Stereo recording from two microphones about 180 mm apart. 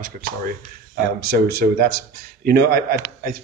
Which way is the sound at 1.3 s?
60° right (ahead or behind).